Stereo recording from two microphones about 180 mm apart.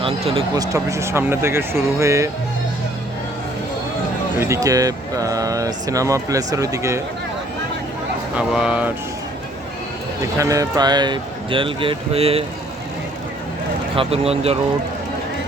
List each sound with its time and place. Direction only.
0.0 s speech: 30° right (ahead or behind)
0.5 s speech: 20° right (ahead or behind)
4.4 s speech: 15° right (ahead or behind)
8.4 s speech: 5° right (ahead or behind)
10.3 s speech: 20° right (ahead or behind); by 12.5 s 35° right (ahead or behind)
13.9 s speech: 30° right (ahead or behind)